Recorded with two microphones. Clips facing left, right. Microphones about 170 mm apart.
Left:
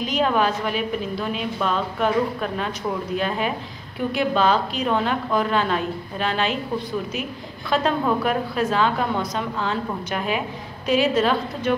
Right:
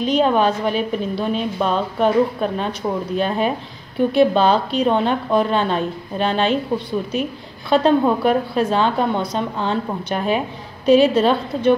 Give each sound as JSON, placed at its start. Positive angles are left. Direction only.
{"t": 0.0, "sound": "a woman's voice", "side_deg": -30}